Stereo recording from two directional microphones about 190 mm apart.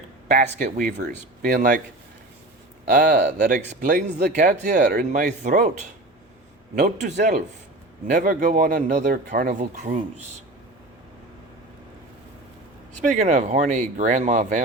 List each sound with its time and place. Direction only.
0.3 s speech: 40° right (ahead or behind)
2.8 s speech: 45° right (ahead or behind)
6.7 s speech: 40° right (ahead or behind)
13.1 s speech: 40° right (ahead or behind)